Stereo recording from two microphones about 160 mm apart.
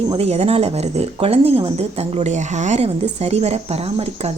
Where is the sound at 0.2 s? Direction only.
40° right (ahead or behind).